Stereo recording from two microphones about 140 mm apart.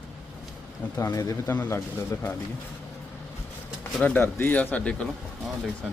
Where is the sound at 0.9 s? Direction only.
25° left (ahead or behind).